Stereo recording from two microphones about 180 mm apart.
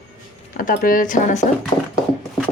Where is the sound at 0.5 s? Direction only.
50° left (ahead or behind).